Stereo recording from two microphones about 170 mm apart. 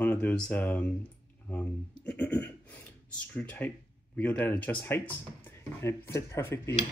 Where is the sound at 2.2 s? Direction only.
10° left (ahead or behind).